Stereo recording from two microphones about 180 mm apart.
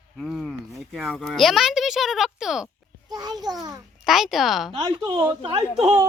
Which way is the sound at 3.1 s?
20° right (ahead or behind).